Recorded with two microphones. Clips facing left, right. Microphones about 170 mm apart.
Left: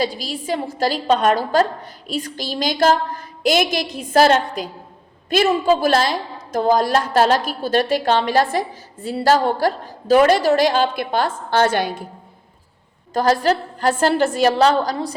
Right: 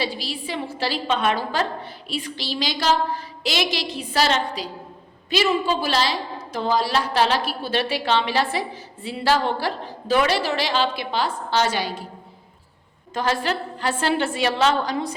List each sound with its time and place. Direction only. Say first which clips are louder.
0.0 s a woman's voice: left 4 dB; 45° left (ahead or behind)
13.1 s a woman's voice: left 7 dB; 40° left (ahead or behind)